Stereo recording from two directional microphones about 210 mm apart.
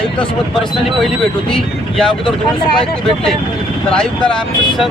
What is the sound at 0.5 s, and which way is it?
Speech, centre (ahead or behind).